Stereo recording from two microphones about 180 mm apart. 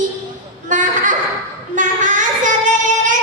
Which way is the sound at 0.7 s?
45° right (ahead or behind).